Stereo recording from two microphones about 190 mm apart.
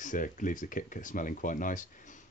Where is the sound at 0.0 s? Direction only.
45° left (ahead or behind).